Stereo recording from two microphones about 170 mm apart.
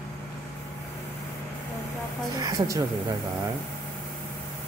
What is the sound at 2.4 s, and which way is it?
Speech, 20° right (ahead or behind).